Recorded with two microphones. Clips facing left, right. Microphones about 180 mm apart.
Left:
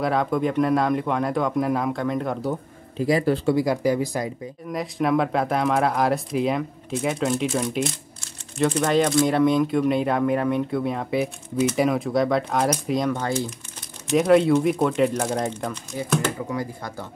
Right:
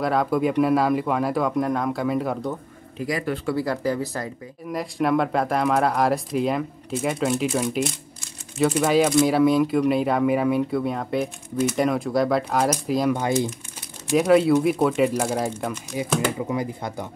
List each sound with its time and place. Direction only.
0.0 s speech: centre (ahead or behind)
3.0 s speech: 30° left (ahead or behind)
3.5 s speech: 15° left (ahead or behind)
4.6 s speech: centre (ahead or behind)
14.1 s speech: centre (ahead or behind); by 17.1 s 20° right (ahead or behind)